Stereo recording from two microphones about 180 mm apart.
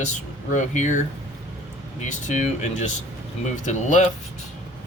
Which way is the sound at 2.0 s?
40° left (ahead or behind).